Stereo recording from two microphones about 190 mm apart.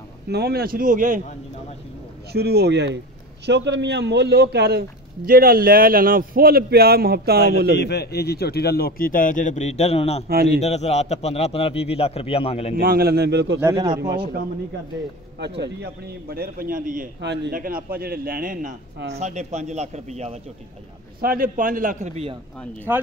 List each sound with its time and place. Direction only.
0.3 s a man's voice: 55° right (ahead or behind)
2.3 s a man's voice: 60° right (ahead or behind)
7.7 s a man's voice: 60° left (ahead or behind); by 10.2 s 35° left (ahead or behind)
10.2 s a man's voice: 55° right (ahead or behind)
10.6 s a man's voice: 35° left (ahead or behind)
12.8 s a man's voice: 55° right (ahead or behind)
13.9 s a man's voice: 20° right (ahead or behind)
15.3 s a man's voice: 60° right (ahead or behind)
17.2 s a man's voice: 65° right (ahead or behind)
17.6 s a man's voice: 50° right (ahead or behind)
21.2 s a man's voice: 50° right (ahead or behind); by 22.4 s 35° right (ahead or behind)